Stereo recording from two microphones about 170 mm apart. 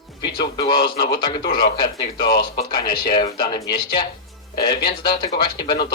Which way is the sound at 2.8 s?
25° left (ahead or behind).